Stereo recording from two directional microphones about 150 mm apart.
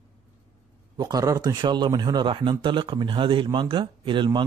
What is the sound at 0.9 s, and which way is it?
Speech, 25° right (ahead or behind).